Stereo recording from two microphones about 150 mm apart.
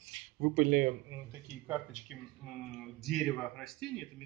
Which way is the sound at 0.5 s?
75° right (ahead or behind).